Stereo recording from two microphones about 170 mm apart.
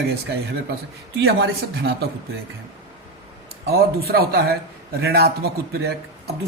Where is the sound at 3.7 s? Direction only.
65° right (ahead or behind).